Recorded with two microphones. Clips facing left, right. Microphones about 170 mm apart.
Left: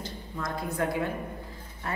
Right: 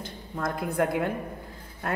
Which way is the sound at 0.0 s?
55° right (ahead or behind).